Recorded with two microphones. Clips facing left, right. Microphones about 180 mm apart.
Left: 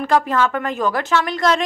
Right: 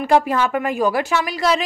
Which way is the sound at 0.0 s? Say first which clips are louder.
Right 1 dB; 15° right (ahead or behind).